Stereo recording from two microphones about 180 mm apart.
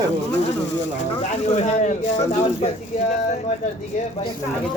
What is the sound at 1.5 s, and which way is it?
Speech, 40° left (ahead or behind).